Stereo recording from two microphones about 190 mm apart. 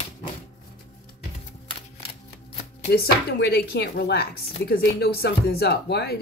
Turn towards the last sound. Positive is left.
turn(degrees=60)  # may be behind; listen again after turning